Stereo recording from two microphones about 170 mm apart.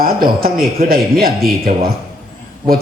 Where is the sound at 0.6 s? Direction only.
60° right (ahead or behind).